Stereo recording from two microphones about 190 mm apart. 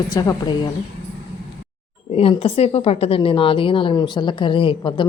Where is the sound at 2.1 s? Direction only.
30° left (ahead or behind).